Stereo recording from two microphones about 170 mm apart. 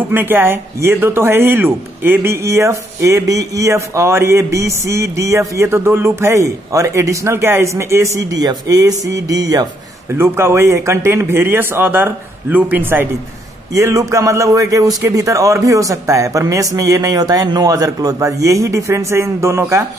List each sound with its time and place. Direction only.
0.1 s a man's voice: 10° right (ahead or behind)